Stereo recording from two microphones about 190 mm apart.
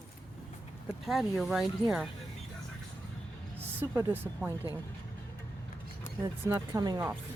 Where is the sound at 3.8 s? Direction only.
15° right (ahead or behind).